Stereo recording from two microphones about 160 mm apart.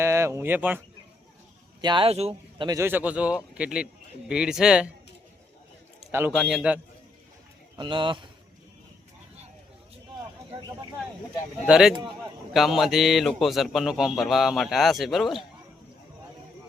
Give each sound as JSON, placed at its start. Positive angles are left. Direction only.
{"t": 0.0, "sound": "speech", "side_deg": -15}
{"t": 1.8, "sound": "speech", "side_deg": -30}
{"t": 2.6, "sound": "a man's voice", "side_deg": -15}
{"t": 6.1, "sound": "a man's voice", "side_deg": -15}
{"t": 6.3, "sound": "a man's voice", "side_deg": 0}
{"t": 7.8, "sound": "speech", "side_deg": -30}
{"t": 10.5, "sound": "a sound", "side_deg": -30}
{"t": 11.6, "sound": "a man's voice", "side_deg": -5}